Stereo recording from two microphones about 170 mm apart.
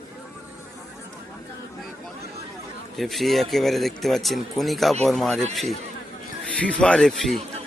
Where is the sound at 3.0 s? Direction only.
Centre (ahead or behind).